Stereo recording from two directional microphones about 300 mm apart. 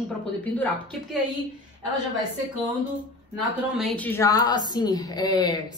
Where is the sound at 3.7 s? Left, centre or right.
Centre.